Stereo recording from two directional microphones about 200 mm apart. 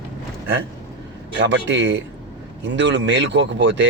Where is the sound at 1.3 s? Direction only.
65° right (ahead or behind).